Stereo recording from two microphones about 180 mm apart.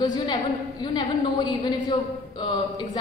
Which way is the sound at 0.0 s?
20° left (ahead or behind).